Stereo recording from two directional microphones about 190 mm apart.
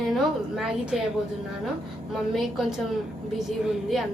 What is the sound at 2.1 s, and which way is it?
A woman's voice, centre (ahead or behind).